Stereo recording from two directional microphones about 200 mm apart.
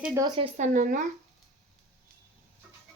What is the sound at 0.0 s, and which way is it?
Speech, 15° right (ahead or behind).